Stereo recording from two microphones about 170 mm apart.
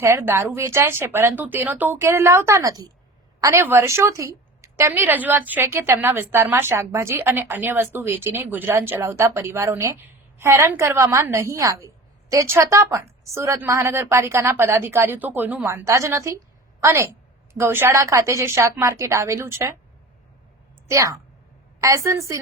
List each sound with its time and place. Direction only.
0.0 s a woman's voice: 15° right (ahead or behind)
20.8 s a woman's voice: 15° right (ahead or behind)